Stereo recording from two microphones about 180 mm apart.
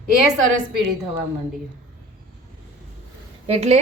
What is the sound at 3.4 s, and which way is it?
Speech, 35° right (ahead or behind).